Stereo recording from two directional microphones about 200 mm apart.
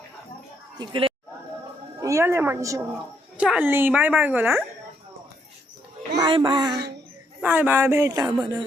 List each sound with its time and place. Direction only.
0.8 s speech: 25° right (ahead or behind)
2.0 s a woman's voice: 15° right (ahead or behind)
3.3 s a woman's voice: 5° right (ahead or behind)
6.1 s music: 20° right (ahead or behind)
7.4 s a woman's voice: 10° right (ahead or behind)